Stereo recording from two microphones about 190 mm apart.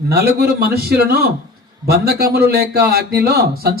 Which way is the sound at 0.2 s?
55° right (ahead or behind).